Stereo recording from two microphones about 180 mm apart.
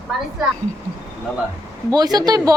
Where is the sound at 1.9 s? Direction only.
20° right (ahead or behind).